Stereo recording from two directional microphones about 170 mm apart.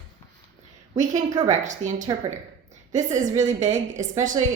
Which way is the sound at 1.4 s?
45° right (ahead or behind).